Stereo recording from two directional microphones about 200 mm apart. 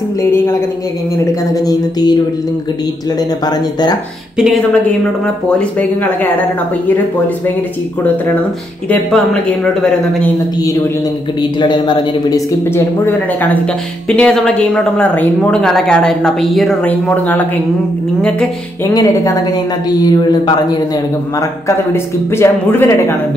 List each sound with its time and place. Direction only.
0.2 s a man's voice: 15° left (ahead or behind)
4.4 s speech: 5° left (ahead or behind)
8.8 s a man's voice: 5° left (ahead or behind)
11.6 s a man's voice: 20° left (ahead or behind)
18.9 s a man's voice: 15° left (ahead or behind)